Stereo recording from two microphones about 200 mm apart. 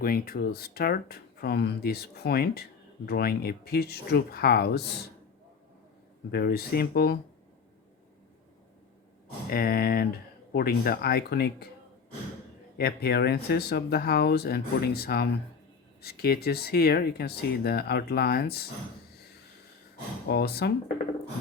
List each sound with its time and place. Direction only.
0.0 s speech: 50° left (ahead or behind)
6.3 s speech: 55° left (ahead or behind)
9.5 s speech: 50° left (ahead or behind)
12.8 s speech: 55° left (ahead or behind)
20.2 s speech: 55° left (ahead or behind)